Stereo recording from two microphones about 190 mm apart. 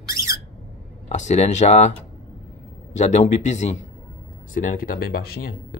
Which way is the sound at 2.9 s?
40° left (ahead or behind).